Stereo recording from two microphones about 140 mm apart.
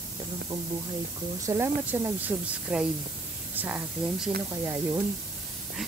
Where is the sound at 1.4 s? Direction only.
20° right (ahead or behind).